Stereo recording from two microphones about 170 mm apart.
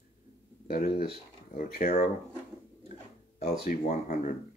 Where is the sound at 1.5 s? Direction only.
55° left (ahead or behind).